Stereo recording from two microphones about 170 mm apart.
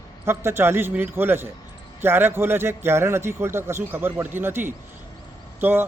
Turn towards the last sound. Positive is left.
turn(degrees=-15)  # may be behind; listen again after turning